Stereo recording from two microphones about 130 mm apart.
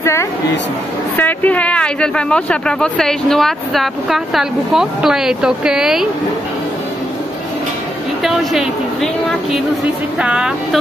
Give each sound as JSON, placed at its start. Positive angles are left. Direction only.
{"t": 0.0, "sound": "a woman's voice", "side_deg": 20}
{"t": 8.2, "sound": "speech", "side_deg": 0}